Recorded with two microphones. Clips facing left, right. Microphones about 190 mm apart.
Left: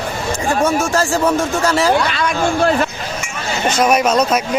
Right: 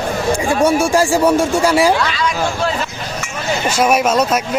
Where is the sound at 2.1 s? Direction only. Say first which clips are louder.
Left 2 dB; 55° left (ahead or behind).